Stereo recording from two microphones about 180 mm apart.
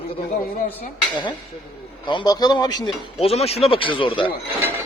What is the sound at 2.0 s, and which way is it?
A man's voice, 25° left (ahead or behind).